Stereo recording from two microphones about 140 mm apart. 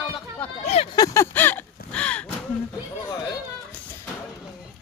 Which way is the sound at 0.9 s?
25° left (ahead or behind).